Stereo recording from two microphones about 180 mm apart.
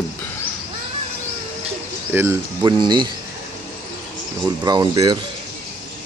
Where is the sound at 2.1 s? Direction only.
10° right (ahead or behind).